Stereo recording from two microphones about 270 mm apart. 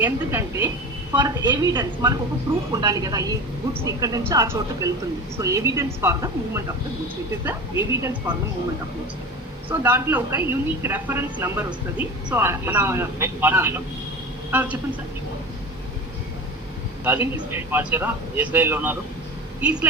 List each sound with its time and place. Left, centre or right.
0.0 s speech: centre
9.6 s speech: centre
17.0 s a woman's voice: centre